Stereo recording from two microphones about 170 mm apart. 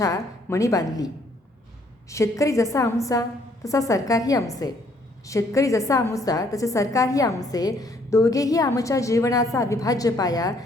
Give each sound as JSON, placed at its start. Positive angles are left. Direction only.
{"t": 0.0, "sound": "a woman's voice", "side_deg": 15}